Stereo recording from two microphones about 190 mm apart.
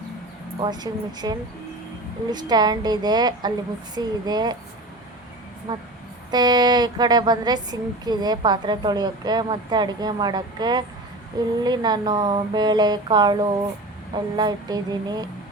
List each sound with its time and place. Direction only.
0.6 s a woman's voice: 20° right (ahead or behind)
5.7 s a woman's voice: 20° right (ahead or behind)